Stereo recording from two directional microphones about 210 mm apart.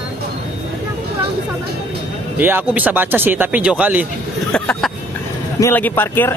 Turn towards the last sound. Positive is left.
turn(degrees=10)  # may be behind; listen again after turning